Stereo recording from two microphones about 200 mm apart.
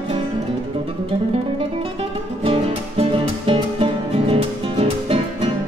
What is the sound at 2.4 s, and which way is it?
Music, 25° right (ahead or behind).